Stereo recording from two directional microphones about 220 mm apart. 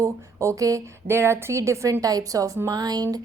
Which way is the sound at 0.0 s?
15° right (ahead or behind).